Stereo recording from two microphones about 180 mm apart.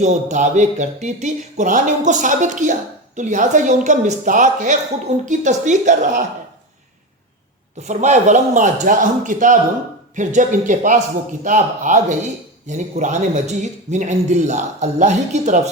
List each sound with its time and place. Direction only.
0.0 s a man's voice: 40° right (ahead or behind)
7.8 s a woman's voice: 40° right (ahead or behind)